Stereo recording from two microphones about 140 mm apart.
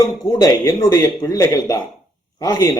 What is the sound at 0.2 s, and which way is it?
A man's voice, 30° left (ahead or behind).